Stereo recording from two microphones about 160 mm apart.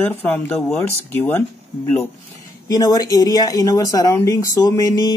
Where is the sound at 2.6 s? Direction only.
25° left (ahead or behind).